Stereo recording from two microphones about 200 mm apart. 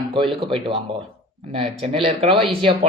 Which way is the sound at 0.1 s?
25° right (ahead or behind).